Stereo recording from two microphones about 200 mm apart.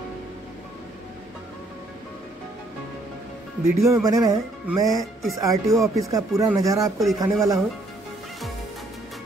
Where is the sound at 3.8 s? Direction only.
15° right (ahead or behind).